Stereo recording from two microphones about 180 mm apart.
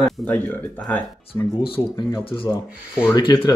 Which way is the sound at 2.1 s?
25° left (ahead or behind).